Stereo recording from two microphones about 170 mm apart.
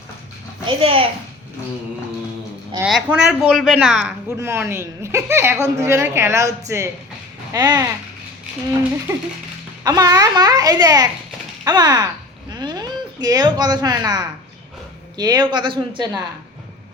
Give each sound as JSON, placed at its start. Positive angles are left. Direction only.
{"t": 0.6, "sound": "a child's voice", "side_deg": -30}
{"t": 2.8, "sound": "speech", "side_deg": -5}
{"t": 4.4, "sound": "a woman's voice", "side_deg": -15}
{"t": 9.8, "sound": "a child's voice", "side_deg": -20}
{"t": 11.6, "sound": "a sound", "side_deg": -25}
{"t": 13.2, "sound": "a child's voice", "side_deg": -25}